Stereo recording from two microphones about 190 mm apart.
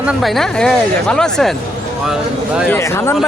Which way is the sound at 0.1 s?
Centre (ahead or behind).